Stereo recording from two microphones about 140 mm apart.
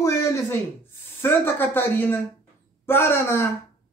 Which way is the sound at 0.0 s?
20° left (ahead or behind).